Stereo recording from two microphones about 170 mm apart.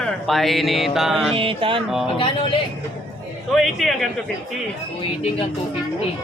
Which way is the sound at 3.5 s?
Centre (ahead or behind).